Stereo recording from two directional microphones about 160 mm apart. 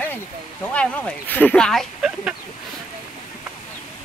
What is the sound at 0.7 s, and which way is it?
Speech, 10° left (ahead or behind).